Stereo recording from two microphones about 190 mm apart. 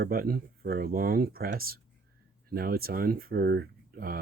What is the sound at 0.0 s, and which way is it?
Speech, 50° right (ahead or behind).